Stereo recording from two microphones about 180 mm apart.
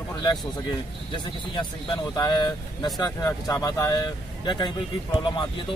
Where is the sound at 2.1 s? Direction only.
25° left (ahead or behind).